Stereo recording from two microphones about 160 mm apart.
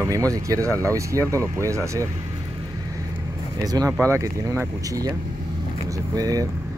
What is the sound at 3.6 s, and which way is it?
Speech, 25° right (ahead or behind).